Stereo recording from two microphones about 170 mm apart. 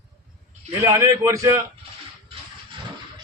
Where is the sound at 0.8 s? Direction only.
15° right (ahead or behind).